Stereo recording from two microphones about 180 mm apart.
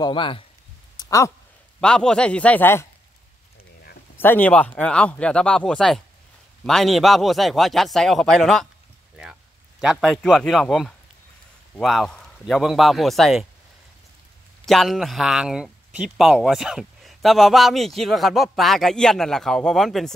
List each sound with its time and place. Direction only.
0.0 s speech: 25° left (ahead or behind)
0.9 s a sound: 15° left (ahead or behind)
1.8 s speech: 5° left (ahead or behind)
4.2 s a man's voice: 10° left (ahead or behind)
14.7 s a man's voice: centre (ahead or behind)